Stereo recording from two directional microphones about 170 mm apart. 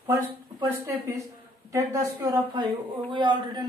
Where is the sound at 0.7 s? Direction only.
15° right (ahead or behind).